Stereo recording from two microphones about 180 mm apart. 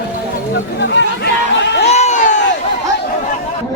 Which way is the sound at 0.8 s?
80° left.